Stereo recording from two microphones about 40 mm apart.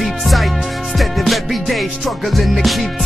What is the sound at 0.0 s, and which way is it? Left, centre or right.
Music, centre.